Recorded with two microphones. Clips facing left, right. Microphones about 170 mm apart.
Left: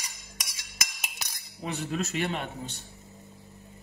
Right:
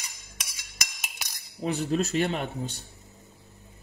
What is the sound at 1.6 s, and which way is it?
Speech, 35° right (ahead or behind).